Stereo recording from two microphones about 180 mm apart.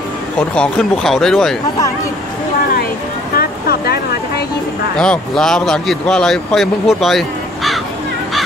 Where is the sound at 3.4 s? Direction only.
60° left (ahead or behind).